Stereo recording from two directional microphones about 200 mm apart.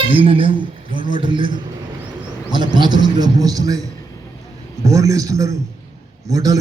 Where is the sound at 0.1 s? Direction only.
25° right (ahead or behind).